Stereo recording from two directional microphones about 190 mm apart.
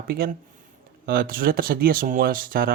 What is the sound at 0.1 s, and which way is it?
Speech, 55° right (ahead or behind).